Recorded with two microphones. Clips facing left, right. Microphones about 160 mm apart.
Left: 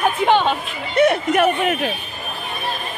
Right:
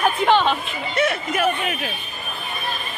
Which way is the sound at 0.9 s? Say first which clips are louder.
Left 7 dB; 55° left (ahead or behind).